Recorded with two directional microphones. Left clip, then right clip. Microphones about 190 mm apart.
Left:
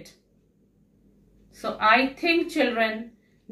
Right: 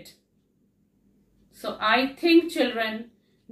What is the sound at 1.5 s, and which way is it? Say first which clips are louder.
A woman's voice: left 3 dB; 20° right (ahead or behind).